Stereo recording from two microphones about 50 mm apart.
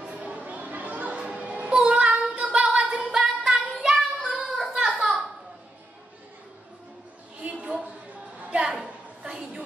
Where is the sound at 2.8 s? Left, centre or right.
Centre.